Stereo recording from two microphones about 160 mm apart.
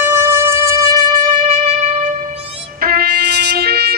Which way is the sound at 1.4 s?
40° right (ahead or behind).